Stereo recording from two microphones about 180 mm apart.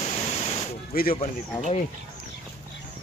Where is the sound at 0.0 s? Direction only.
35° left (ahead or behind).